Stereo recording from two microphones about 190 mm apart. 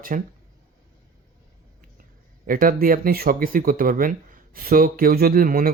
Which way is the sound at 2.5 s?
50° right (ahead or behind).